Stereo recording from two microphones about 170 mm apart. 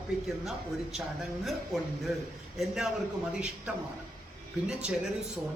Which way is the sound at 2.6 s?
Centre (ahead or behind).